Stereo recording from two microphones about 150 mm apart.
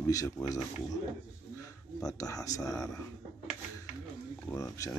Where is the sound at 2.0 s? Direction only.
25° left (ahead or behind).